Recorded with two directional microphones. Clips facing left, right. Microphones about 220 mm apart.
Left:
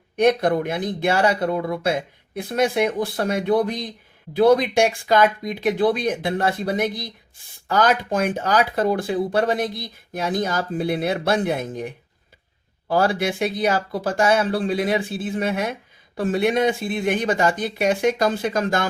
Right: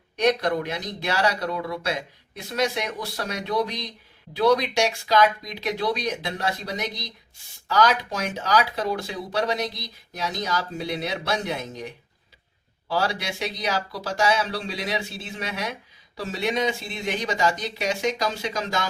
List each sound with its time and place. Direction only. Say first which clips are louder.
0.2 s speech: left 4 dB; 50° left (ahead or behind)